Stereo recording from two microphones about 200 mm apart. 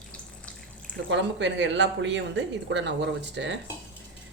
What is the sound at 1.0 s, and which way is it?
Speech, 65° right (ahead or behind).